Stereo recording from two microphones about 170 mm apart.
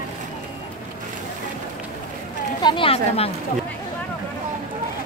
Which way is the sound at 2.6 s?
30° left (ahead or behind).